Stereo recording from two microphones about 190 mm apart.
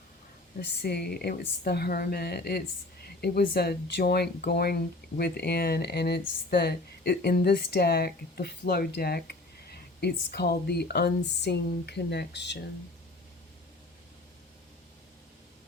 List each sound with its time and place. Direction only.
0.6 s speech: 60° left (ahead or behind)